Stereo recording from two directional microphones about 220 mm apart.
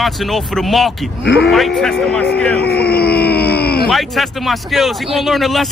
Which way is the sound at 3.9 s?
Centre (ahead or behind).